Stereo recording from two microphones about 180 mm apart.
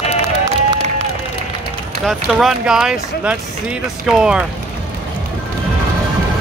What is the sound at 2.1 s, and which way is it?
Speech, centre (ahead or behind).